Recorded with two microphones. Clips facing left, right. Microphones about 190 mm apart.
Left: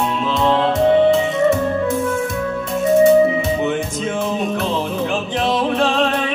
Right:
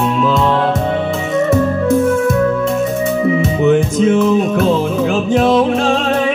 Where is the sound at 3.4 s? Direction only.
45° right (ahead or behind).